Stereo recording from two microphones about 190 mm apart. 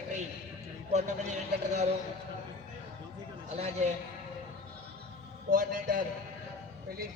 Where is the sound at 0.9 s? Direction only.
35° right (ahead or behind).